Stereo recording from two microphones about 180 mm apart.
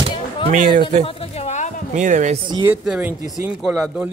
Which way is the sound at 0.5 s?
50° right (ahead or behind).